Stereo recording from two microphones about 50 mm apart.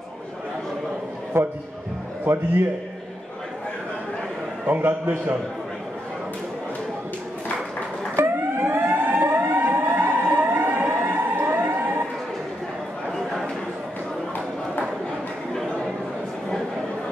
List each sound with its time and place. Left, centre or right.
1.3 s a man's voice: right
2.3 s a man's voice: right
4.6 s a man's voice: right
8.2 s siren: right